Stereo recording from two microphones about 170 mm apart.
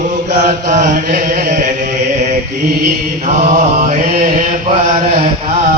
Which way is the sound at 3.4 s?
55° right (ahead or behind).